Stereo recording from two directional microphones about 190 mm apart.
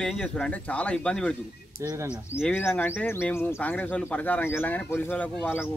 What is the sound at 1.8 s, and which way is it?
Speech, 15° right (ahead or behind).